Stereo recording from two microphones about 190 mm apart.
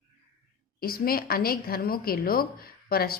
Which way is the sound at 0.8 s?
50° left (ahead or behind).